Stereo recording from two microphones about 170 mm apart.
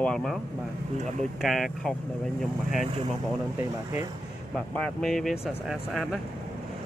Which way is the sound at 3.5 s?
15° right (ahead or behind).